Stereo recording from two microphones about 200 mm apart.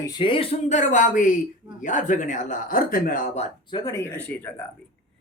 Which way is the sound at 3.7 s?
20° left (ahead or behind).